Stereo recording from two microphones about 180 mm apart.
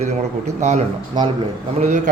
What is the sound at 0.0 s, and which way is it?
A man's voice, 40° right (ahead or behind).